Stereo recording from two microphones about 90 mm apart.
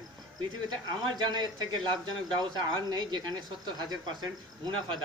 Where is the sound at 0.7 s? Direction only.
55° right (ahead or behind).